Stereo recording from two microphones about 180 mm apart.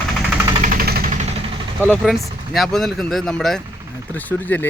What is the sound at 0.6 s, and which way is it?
Vehicle, 55° right (ahead or behind).